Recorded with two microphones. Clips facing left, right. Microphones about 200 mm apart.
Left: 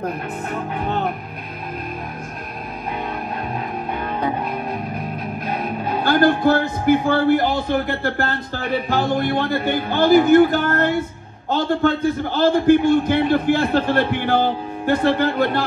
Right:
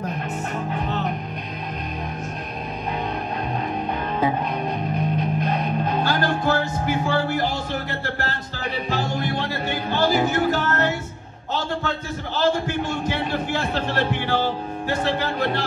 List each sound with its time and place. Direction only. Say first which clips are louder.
4.9 s music: right 3 dB; 5° left (ahead or behind)
6.0 s a sound: left 10 dB; 55° left (ahead or behind)
11.5 s a man's voice: left 8 dB; 55° left (ahead or behind)